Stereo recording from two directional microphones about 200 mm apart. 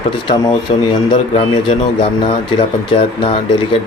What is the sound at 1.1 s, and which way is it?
Speech, 30° left (ahead or behind).